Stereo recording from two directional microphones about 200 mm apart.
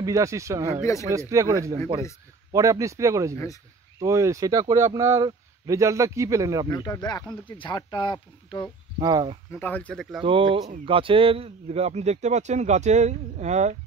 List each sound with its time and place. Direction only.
0.0 s speech: 15° right (ahead or behind)
6.7 s speech: 20° left (ahead or behind)
9.0 s speech: 20° right (ahead or behind)
9.5 s speech: 10° left (ahead or behind)
10.2 s speech: 25° right (ahead or behind)